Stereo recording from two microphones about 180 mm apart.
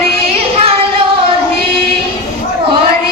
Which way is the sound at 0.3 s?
35° right (ahead or behind).